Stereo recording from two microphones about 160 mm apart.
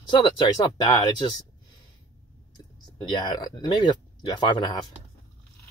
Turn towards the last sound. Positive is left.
turn(degrees=25)  # may be behind; listen again after turning